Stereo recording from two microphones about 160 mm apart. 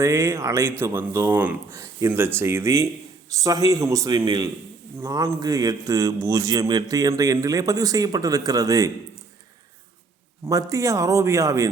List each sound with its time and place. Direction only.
0.0 s a man's voice: 20° right (ahead or behind)
10.4 s a man's voice: 20° right (ahead or behind)